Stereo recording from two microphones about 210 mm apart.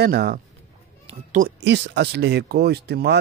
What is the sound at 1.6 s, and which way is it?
Speech, 55° right (ahead or behind).